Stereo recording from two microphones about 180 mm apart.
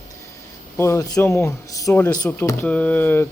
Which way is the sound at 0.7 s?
15° left (ahead or behind).